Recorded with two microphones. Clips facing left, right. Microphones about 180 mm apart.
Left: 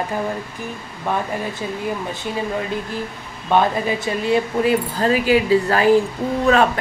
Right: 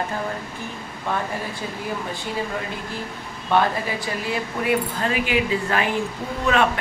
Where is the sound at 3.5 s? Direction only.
25° left (ahead or behind).